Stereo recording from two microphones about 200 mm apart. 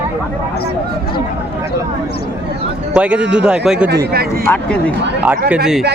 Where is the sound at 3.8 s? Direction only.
50° right (ahead or behind).